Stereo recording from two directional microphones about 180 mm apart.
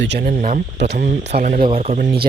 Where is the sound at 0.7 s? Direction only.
70° right (ahead or behind).